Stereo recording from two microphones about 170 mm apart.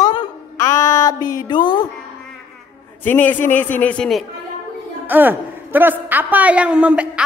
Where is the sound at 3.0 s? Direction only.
10° left (ahead or behind).